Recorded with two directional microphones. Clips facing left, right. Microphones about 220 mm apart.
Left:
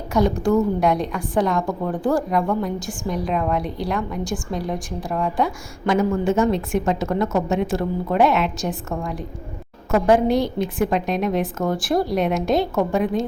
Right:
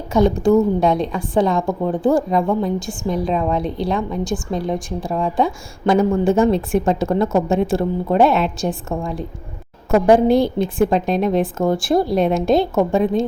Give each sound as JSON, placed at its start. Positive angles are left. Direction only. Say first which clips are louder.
{"t": 0.1, "sound": "a woman's voice", "louder": "right 4 dB", "side_deg": -25}
{"t": 10.2, "sound": "a woman's voice", "louder": "right 4 dB", "side_deg": -30}